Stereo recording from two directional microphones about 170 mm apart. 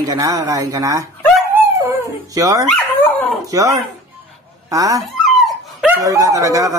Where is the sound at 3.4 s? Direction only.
20° right (ahead or behind).